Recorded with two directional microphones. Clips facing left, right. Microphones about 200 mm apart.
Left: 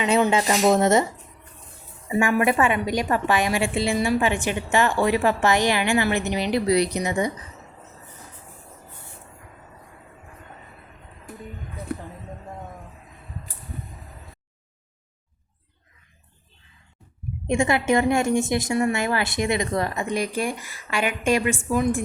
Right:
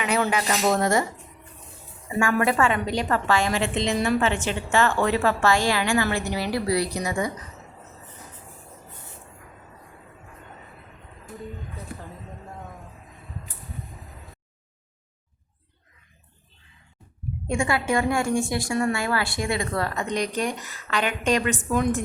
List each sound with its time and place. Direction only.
0.0 s a woman's voice: 25° left (ahead or behind)
2.0 s a woman's voice: 20° left (ahead or behind)
17.4 s a woman's voice: 20° left (ahead or behind); by 22.0 s 5° left (ahead or behind)